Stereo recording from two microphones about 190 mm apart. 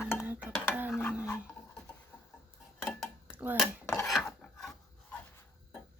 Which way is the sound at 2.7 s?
5° left (ahead or behind).